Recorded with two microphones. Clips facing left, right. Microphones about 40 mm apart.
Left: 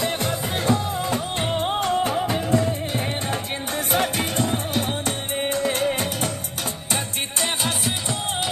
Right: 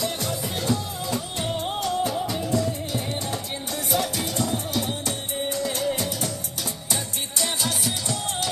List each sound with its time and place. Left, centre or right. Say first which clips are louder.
0.0 s music: left 3 dB; left
3.9 s music: left 3 dB; left